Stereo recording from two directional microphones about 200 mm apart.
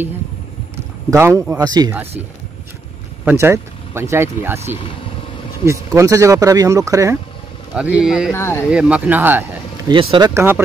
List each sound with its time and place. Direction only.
1.1 s speech: 15° right (ahead or behind)
3.3 s speech: 10° right (ahead or behind)
8.3 s speech: 10° left (ahead or behind)
8.6 s speech: 5° right (ahead or behind)
9.8 s speech: 25° right (ahead or behind)
10.3 s speech: 10° right (ahead or behind)